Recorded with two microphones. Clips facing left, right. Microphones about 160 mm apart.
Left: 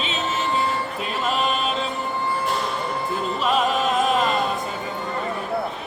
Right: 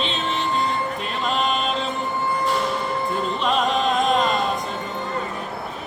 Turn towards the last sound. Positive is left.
turn(degrees=5)  # may be behind; listen again after turning